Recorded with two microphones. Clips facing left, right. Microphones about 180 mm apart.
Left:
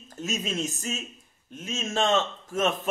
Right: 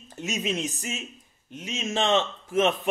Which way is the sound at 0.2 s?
20° right (ahead or behind).